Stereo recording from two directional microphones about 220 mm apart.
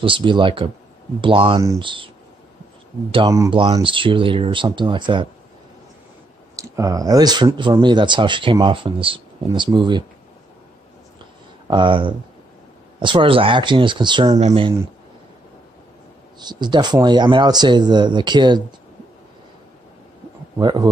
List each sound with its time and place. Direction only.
0.0 s speech: 20° right (ahead or behind)
3.1 s speech: 20° right (ahead or behind)
6.5 s speech: 15° right (ahead or behind)
11.6 s speech: 20° right (ahead or behind)
16.3 s speech: 20° right (ahead or behind)
20.5 s speech: 20° right (ahead or behind)